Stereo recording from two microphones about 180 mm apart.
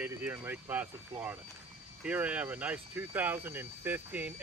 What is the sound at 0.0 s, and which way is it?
Speech, 10° right (ahead or behind).